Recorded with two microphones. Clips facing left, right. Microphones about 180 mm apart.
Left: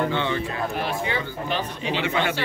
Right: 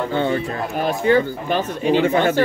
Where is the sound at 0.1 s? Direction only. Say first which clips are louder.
Right 5 dB; 45° right (ahead or behind).